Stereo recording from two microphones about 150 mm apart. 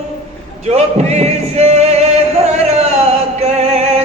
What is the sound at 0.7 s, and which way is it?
Music, 45° right (ahead or behind).